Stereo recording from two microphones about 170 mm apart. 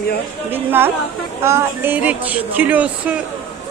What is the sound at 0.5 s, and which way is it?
Speech, 10° right (ahead or behind).